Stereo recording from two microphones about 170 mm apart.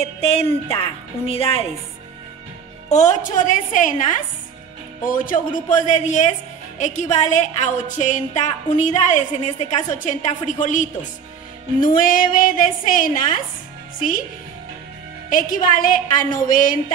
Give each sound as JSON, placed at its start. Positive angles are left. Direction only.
{"t": 0.0, "sound": "a woman's voice", "side_deg": 35}
{"t": 2.9, "sound": "a woman's voice", "side_deg": 45}
{"t": 11.9, "sound": "a woman's voice", "side_deg": 55}
{"t": 15.2, "sound": "a woman's voice", "side_deg": 55}